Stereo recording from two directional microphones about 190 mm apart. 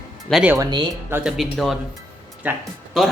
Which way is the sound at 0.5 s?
25° right (ahead or behind).